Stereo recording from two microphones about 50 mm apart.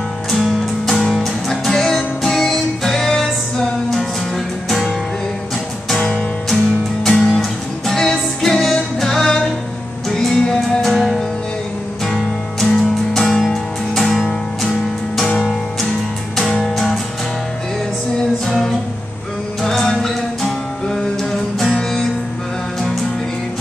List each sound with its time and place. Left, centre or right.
0.3 s music: centre
4.6 s music: centre
16.3 s music: centre
19.6 s music: centre
21.6 s music: left